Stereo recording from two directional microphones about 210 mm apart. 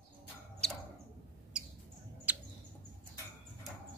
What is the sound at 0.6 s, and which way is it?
Mouse, 5° left (ahead or behind).